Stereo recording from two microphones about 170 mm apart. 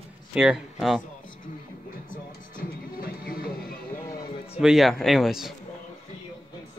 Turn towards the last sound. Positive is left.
turn(degrees=0)  # may be behind; listen again after turning